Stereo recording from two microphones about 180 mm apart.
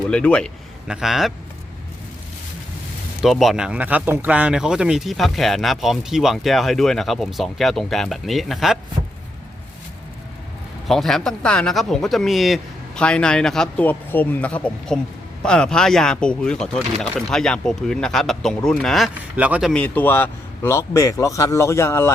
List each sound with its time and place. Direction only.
0.1 s speech: 5° left (ahead or behind)
3.2 s speech: centre (ahead or behind)
10.8 s speech: centre (ahead or behind)
19.7 s speech: 10° left (ahead or behind)